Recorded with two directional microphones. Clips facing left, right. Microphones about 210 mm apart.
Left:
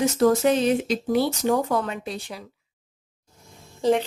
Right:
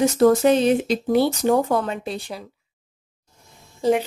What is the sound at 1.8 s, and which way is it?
Speech, 30° right (ahead or behind).